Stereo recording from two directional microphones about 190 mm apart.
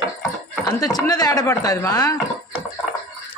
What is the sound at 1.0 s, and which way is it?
Speech, 20° left (ahead or behind).